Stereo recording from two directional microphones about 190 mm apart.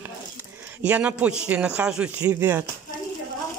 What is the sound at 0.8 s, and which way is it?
Speech, 10° right (ahead or behind).